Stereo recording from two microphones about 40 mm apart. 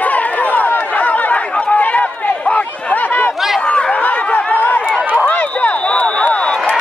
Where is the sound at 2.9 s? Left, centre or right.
Left.